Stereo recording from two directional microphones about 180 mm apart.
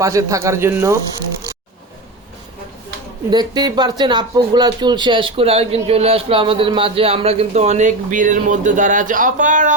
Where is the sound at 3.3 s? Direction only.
25° right (ahead or behind).